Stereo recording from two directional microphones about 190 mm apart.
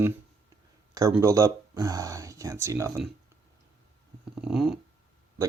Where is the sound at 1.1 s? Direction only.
15° right (ahead or behind).